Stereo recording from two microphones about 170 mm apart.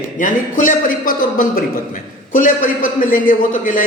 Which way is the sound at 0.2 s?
50° left (ahead or behind).